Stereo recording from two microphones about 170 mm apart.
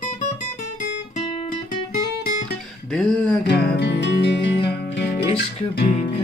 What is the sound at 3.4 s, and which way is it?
Music, 85° left.